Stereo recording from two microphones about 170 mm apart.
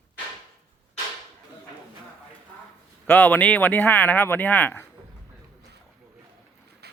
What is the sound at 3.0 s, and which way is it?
Speech, 10° left (ahead or behind).